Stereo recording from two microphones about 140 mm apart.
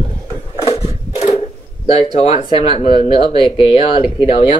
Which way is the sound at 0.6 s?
45° left (ahead or behind).